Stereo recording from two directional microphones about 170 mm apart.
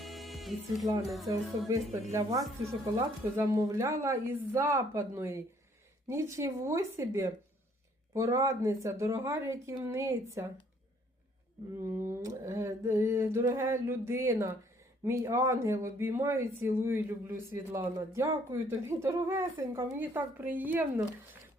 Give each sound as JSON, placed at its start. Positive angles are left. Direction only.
{"t": 0.0, "sound": "speech", "side_deg": 0}
{"t": 1.3, "sound": "speech", "side_deg": -20}
{"t": 11.8, "sound": "speech", "side_deg": -15}